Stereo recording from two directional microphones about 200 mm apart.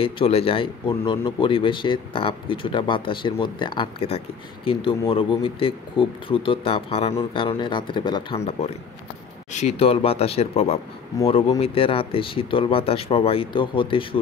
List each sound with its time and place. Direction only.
0.0 s a man's voice: 30° left (ahead or behind)